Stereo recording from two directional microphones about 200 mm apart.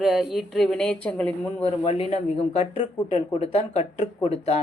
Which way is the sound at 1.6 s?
30° left (ahead or behind).